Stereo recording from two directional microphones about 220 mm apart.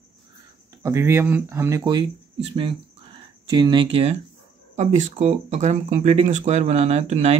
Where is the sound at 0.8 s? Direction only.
10° right (ahead or behind).